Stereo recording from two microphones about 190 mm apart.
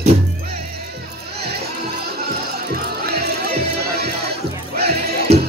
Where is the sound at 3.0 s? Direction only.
55° right (ahead or behind).